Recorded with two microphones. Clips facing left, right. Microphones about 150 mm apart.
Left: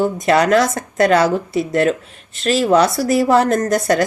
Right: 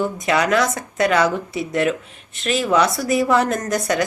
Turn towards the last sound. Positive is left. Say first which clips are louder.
# left 5 dB
turn(degrees=40)  # may be behind; listen again after turning